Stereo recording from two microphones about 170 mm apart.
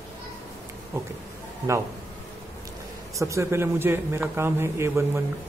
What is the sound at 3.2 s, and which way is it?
Speech, 15° right (ahead or behind).